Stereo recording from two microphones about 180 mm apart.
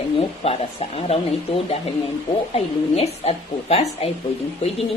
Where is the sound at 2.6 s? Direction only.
35° left (ahead or behind).